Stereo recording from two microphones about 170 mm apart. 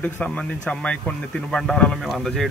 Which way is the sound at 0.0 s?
5° left (ahead or behind).